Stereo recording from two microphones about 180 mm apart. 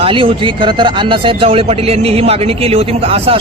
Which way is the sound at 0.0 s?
30° right (ahead or behind).